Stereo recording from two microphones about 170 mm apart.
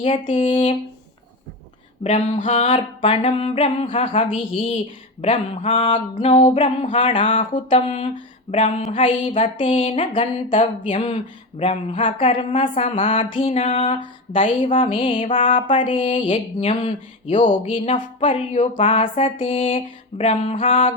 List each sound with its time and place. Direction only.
0.0 s speech: 35° left (ahead or behind)
2.0 s a sound: 40° left (ahead or behind)
2.6 s speech: 30° left (ahead or behind)